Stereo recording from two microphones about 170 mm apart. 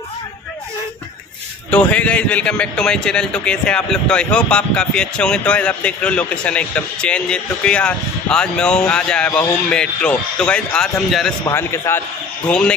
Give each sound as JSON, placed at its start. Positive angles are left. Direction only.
{"t": 1.7, "sound": "a man's voice", "side_deg": 5}
{"t": 11.4, "sound": "a man's voice", "side_deg": 15}